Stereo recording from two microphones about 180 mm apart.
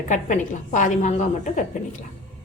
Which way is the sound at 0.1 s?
45° left (ahead or behind).